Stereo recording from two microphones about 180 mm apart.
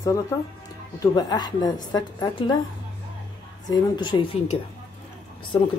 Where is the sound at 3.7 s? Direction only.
25° left (ahead or behind).